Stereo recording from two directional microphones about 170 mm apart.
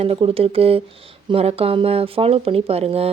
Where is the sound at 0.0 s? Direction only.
35° right (ahead or behind).